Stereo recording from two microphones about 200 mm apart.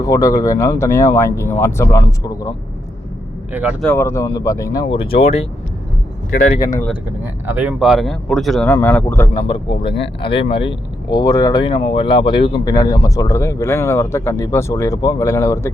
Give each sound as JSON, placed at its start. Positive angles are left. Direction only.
{"t": 0.0, "sound": "speech", "side_deg": 15}
{"t": 3.5, "sound": "speech", "side_deg": -5}
{"t": 3.8, "sound": "speech", "side_deg": 10}
{"t": 6.6, "sound": "speech", "side_deg": 15}
{"t": 7.4, "sound": "speech", "side_deg": -5}
{"t": 10.2, "sound": "speech", "side_deg": 25}